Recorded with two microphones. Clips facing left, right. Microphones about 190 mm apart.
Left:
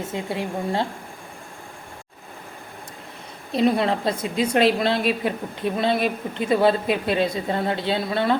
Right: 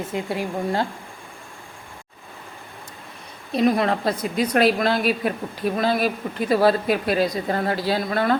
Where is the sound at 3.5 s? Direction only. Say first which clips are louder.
Even; 30° left (ahead or behind).